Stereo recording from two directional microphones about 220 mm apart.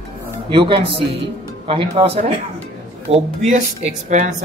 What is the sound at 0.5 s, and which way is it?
Speech, 25° right (ahead or behind).